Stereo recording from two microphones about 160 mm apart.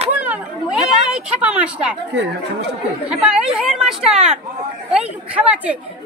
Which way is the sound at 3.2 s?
5° right (ahead or behind).